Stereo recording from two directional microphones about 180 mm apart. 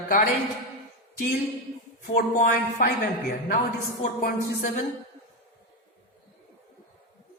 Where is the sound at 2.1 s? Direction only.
50° left (ahead or behind).